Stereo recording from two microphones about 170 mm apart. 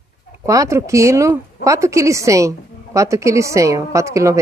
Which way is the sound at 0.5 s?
20° right (ahead or behind).